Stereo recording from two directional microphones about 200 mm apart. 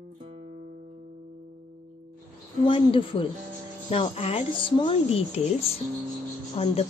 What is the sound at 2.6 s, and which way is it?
Speech, 25° left (ahead or behind).